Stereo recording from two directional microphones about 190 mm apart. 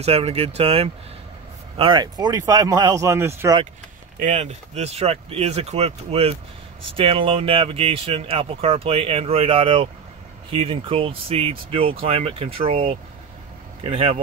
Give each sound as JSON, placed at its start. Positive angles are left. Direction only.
{"t": 0.0, "sound": "speech", "side_deg": -35}
{"t": 4.2, "sound": "speech", "side_deg": -35}